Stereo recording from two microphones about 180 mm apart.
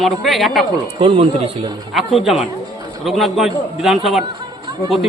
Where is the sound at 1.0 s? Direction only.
35° right (ahead or behind).